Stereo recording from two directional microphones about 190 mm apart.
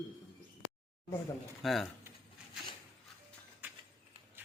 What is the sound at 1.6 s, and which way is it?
Speech, centre (ahead or behind).